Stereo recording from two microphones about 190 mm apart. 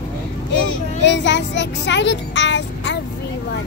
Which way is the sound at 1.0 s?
70° left (ahead or behind).